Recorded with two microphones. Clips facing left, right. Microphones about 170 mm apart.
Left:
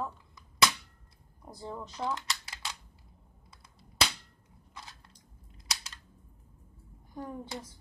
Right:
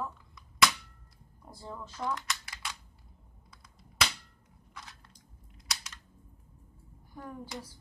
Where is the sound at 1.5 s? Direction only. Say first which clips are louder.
Left 3 dB; 20° left (ahead or behind).